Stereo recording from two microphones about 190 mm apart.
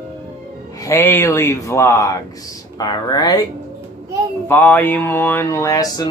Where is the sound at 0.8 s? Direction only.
15° left (ahead or behind).